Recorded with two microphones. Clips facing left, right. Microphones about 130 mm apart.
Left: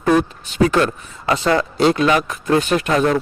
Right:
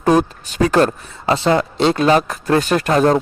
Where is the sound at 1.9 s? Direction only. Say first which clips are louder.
Right 2 dB; 35° right (ahead or behind).